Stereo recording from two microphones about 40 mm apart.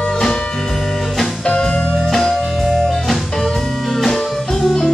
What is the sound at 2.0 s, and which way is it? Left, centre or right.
Music, centre.